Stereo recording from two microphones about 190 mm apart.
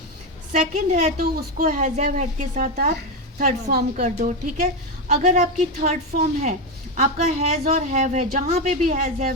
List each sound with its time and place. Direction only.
0.5 s a woman's voice: 40° right (ahead or behind)
1.2 s a woman's voice: 50° right (ahead or behind)